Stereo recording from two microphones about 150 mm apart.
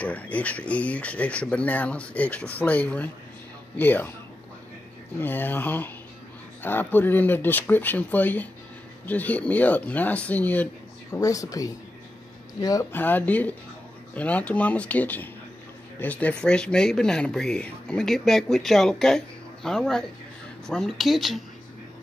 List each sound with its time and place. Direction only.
0.0 s speech: 10° left (ahead or behind)
5.2 s speech: 15° left (ahead or behind)
11.1 s speech: 20° left (ahead or behind)
12.9 s speech: 10° left (ahead or behind)